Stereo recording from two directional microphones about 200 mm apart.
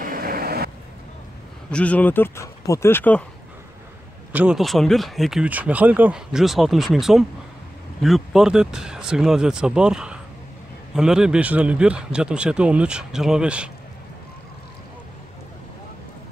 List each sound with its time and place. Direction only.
0.0 s vehicle: 45° right (ahead or behind)
1.7 s speech: 5° left (ahead or behind)
4.3 s speech: 5° right (ahead or behind)